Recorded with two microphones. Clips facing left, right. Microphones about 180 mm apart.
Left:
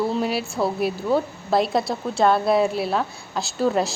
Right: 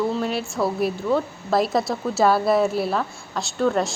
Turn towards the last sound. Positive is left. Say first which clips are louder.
# even
turn(degrees=5)  # may be behind; listen again after turning